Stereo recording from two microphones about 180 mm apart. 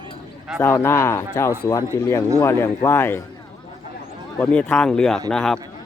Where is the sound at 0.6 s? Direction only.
15° left (ahead or behind).